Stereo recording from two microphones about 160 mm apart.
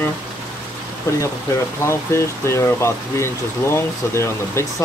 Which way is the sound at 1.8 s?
15° left (ahead or behind).